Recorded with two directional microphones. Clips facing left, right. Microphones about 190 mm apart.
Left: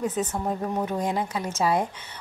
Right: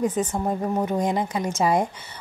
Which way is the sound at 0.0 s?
10° right (ahead or behind).